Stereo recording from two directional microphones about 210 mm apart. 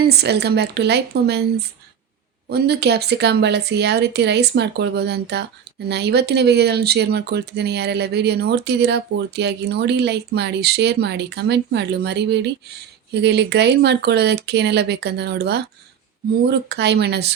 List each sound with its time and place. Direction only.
0.0 s speech: 50° right (ahead or behind)